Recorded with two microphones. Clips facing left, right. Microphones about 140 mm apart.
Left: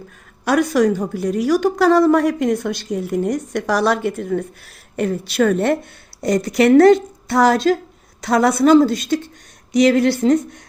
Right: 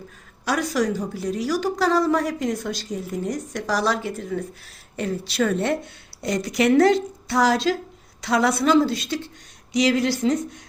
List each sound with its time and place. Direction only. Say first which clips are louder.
0.4 s a woman's voice: left 7 dB; 55° left (ahead or behind)